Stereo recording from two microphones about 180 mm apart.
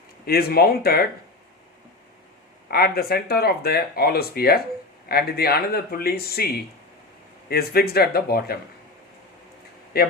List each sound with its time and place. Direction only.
0.3 s speech: 60° left (ahead or behind)
2.6 s speech: 60° left (ahead or behind)
7.5 s speech: 60° left (ahead or behind)
9.9 s speech: 60° left (ahead or behind)